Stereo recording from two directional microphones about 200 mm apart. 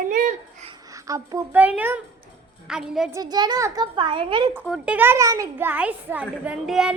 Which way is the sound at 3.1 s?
20° right (ahead or behind).